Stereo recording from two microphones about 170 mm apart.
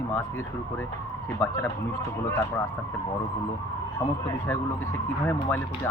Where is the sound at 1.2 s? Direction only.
15° left (ahead or behind).